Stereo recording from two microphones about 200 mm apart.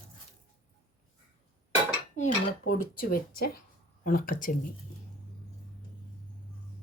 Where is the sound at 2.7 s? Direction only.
45° left (ahead or behind).